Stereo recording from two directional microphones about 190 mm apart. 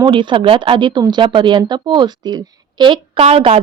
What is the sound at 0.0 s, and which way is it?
Speech, 25° right (ahead or behind).